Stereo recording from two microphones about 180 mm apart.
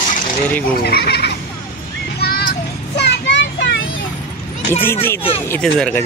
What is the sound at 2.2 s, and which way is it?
Children playing, 60° left (ahead or behind).